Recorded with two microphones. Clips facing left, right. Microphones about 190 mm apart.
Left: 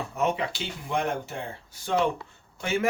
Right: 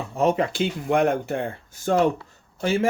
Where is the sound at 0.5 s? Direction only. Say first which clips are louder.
Right 8 dB; 55° right (ahead or behind).